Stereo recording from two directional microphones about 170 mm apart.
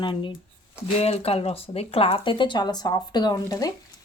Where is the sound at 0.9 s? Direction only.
40° left (ahead or behind).